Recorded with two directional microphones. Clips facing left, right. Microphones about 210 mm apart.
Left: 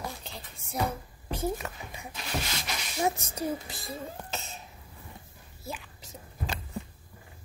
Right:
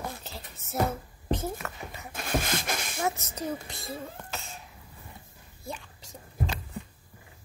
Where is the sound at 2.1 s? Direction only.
50° right (ahead or behind).